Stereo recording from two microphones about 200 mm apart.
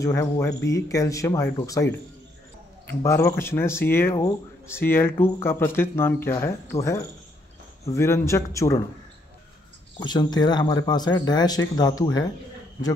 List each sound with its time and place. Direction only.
0.0 s speech: 15° left (ahead or behind)
2.9 s speech: 15° left (ahead or behind)
9.9 s speech: 20° left (ahead or behind)